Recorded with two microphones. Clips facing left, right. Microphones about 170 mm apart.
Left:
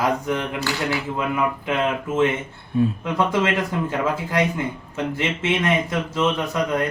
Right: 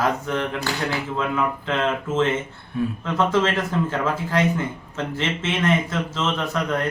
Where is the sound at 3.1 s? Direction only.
15° left (ahead or behind).